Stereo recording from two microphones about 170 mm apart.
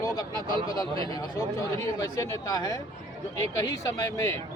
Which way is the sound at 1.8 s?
20° left (ahead or behind).